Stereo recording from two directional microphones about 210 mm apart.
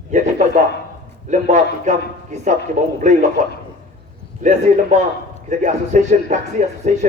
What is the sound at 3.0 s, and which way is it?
Speech, 35° right (ahead or behind).